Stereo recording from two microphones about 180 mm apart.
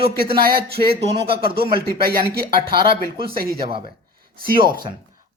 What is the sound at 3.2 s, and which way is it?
Speech, 55° right (ahead or behind).